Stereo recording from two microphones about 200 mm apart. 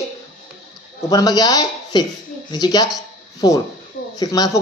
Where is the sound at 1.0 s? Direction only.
20° left (ahead or behind).